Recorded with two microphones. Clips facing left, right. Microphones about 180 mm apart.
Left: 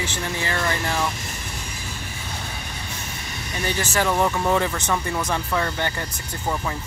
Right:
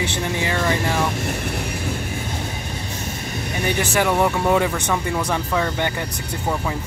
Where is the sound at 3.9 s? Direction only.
15° right (ahead or behind).